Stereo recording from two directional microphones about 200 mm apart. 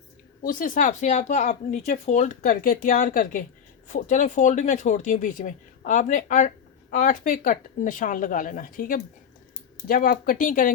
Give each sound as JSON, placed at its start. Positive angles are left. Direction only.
{"t": 0.4, "sound": "speech", "side_deg": 40}